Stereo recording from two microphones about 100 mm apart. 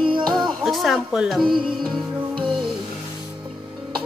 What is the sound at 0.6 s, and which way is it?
Speech, centre (ahead or behind).